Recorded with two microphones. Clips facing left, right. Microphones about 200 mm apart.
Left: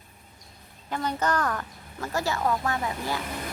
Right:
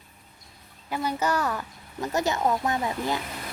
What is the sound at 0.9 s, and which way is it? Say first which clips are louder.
Speech: right 1 dB; 10° right (ahead or behind).